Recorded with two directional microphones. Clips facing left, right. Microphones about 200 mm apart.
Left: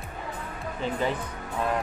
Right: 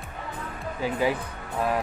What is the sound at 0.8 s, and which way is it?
Speech, 10° right (ahead or behind).